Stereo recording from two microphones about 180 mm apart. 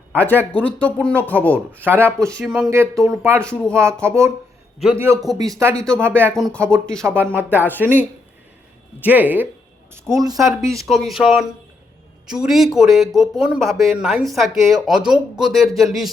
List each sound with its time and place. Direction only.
0.2 s speech: 10° left (ahead or behind)
1.5 s speech: 10° right (ahead or behind)
2.6 s speech: 15° right (ahead or behind)
3.4 s speech: 5° left (ahead or behind)
4.0 s speech: 15° right (ahead or behind)
5.7 s speech: 5° left (ahead or behind)
6.0 s speech: 10° right (ahead or behind)
6.3 s speech: centre (ahead or behind)
7.0 s speech: 15° right (ahead or behind)
9.0 s speech: 10° right (ahead or behind)
10.8 s speech: centre (ahead or behind)